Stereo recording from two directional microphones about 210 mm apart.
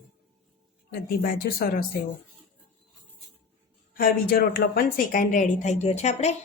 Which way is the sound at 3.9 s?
45° left (ahead or behind).